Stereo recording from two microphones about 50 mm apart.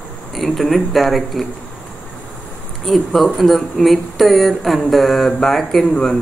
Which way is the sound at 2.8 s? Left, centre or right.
Centre.